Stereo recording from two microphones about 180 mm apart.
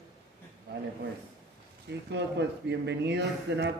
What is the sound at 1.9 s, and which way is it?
A man's voice, 75° right (ahead or behind).